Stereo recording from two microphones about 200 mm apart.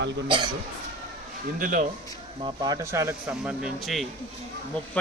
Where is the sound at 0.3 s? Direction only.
25° right (ahead or behind).